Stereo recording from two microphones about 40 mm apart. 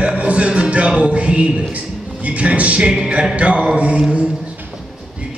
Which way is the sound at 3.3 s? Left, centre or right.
Right.